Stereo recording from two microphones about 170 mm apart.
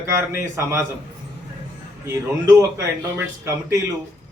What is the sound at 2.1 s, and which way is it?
Speech, 15° right (ahead or behind).